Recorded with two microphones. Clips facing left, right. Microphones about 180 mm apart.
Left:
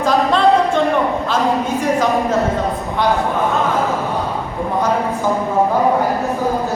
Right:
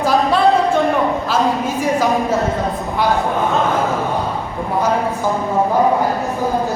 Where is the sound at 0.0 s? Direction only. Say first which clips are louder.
Even; 5° right (ahead or behind).